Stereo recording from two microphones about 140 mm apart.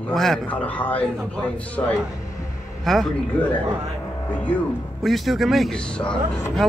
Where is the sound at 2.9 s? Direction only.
Centre (ahead or behind).